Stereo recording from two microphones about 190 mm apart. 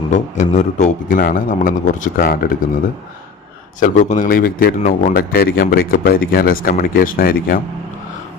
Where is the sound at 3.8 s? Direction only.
40° left (ahead or behind).